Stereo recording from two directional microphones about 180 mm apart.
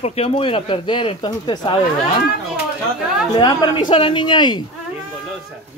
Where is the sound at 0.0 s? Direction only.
35° left (ahead or behind).